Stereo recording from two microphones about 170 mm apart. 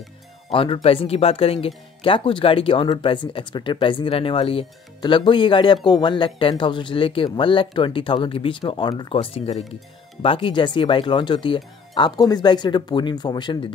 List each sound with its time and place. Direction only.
0.5 s speech: 30° left (ahead or behind)